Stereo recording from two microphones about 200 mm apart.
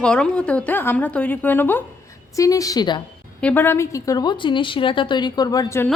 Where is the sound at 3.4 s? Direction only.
10° left (ahead or behind).